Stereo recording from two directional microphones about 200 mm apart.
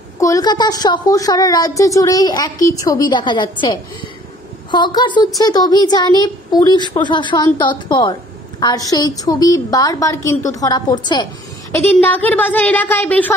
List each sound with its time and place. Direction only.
0.2 s a woman's voice: 20° left (ahead or behind)
12.0 s a woman's voice: 10° left (ahead or behind)